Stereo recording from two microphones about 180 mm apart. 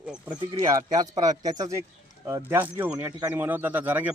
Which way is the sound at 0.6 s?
20° right (ahead or behind).